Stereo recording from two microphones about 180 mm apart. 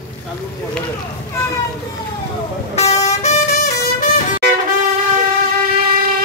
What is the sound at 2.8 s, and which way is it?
Vehicle, 35° left (ahead or behind).